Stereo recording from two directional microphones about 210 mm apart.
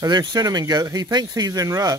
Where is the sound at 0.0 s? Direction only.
20° right (ahead or behind).